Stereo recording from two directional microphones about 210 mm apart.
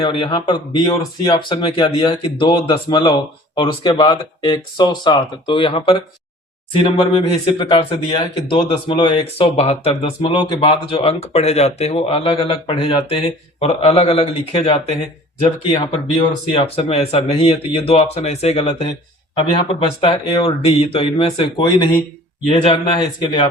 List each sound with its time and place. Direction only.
0.0 s speech: 25° left (ahead or behind)
16.5 s speech: 25° left (ahead or behind)